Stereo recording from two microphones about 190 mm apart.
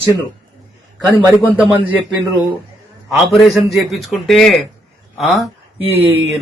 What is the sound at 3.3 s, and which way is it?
A man's voice, centre (ahead or behind).